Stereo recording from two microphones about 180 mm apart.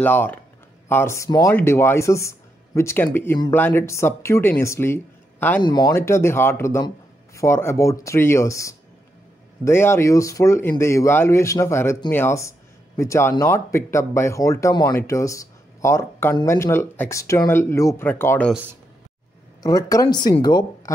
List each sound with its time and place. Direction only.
0.0 s speech: 10° left (ahead or behind)
5.6 s speech: 20° left (ahead or behind)
19.6 s speech: 20° left (ahead or behind)